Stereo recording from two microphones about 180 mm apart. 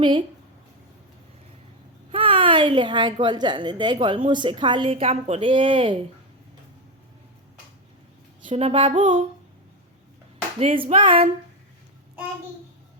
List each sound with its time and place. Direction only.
0.0 s speech: 25° right (ahead or behind)
2.1 s a woman's voice: 30° right (ahead or behind)
8.4 s speech: 30° right (ahead or behind)
10.6 s speech: 35° right (ahead or behind)